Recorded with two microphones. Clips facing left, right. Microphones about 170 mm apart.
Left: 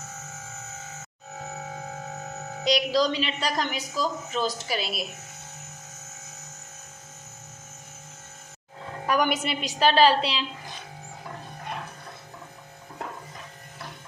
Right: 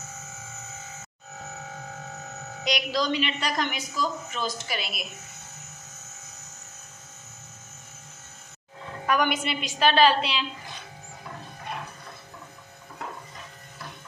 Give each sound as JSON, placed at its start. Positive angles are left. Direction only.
{"t": 2.6, "sound": "a woman's voice", "side_deg": 30}
{"t": 9.0, "sound": "a woman's voice", "side_deg": 35}